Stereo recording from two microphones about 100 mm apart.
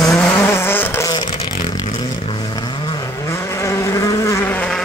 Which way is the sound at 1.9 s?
50° left (ahead or behind).